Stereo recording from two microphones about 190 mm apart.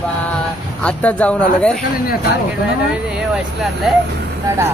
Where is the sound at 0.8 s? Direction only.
5° left (ahead or behind).